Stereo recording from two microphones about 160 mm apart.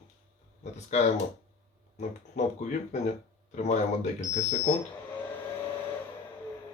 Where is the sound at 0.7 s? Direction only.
45° left (ahead or behind).